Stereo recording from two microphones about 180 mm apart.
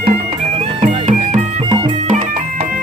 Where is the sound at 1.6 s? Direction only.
25° right (ahead or behind).